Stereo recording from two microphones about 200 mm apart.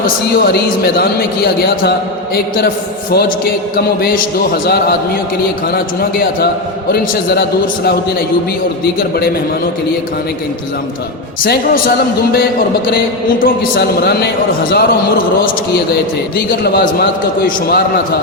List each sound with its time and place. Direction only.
0.0 s a man's voice: 50° left (ahead or behind)
5.7 s a man's voice: 50° left (ahead or behind)
9.0 s a man's voice: 50° left (ahead or behind)
13.4 s a man's voice: 50° left (ahead or behind)
16.6 s a man's voice: 50° left (ahead or behind)